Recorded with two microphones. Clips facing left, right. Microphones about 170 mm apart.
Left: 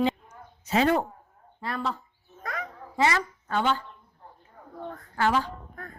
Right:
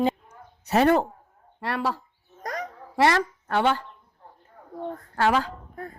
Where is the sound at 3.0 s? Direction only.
65° right (ahead or behind).